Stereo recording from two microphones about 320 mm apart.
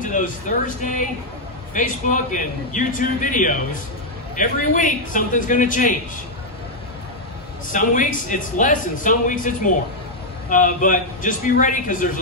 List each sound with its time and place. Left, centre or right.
0.0 s speech: left
7.7 s speech: left